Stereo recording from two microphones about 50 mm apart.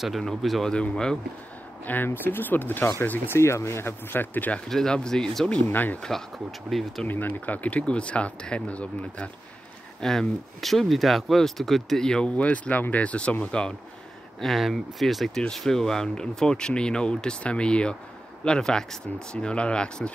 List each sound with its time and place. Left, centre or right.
0.2 s speech: centre
0.7 s speech: centre
2.0 s speech: left
3.3 s speech: left
4.1 s speech: left
4.6 s speech: centre
5.7 s speech: left
6.0 s speech: centre
7.1 s speech: left
9.9 s speech: centre
12.1 s speech: left
14.4 s speech: centre